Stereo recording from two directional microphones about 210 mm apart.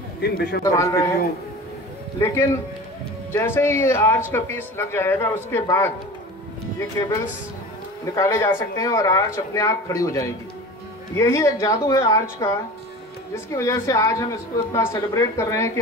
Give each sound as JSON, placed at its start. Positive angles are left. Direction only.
{"t": 0.2, "sound": "a man's voice", "side_deg": 50}
{"t": 0.7, "sound": "speech", "side_deg": 15}
{"t": 2.1, "sound": "speech", "side_deg": 10}
{"t": 8.0, "sound": "speech", "side_deg": 15}